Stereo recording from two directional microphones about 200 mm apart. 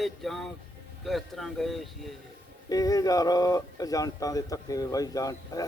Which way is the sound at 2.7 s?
20° left (ahead or behind).